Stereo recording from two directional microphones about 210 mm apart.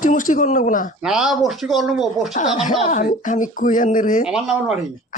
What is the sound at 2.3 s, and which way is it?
Speech, 30° left (ahead or behind).